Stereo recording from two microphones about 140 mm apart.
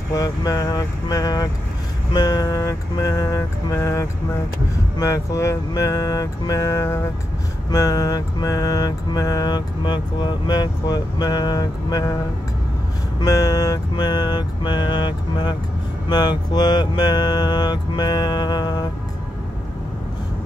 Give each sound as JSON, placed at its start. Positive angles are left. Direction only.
{"t": 0.1, "sound": "mantra", "side_deg": 25}
{"t": 13.2, "sound": "mantra", "side_deg": 25}